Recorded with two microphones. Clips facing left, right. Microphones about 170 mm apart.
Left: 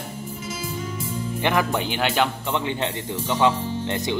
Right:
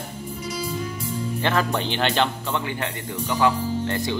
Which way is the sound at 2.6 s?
20° left (ahead or behind).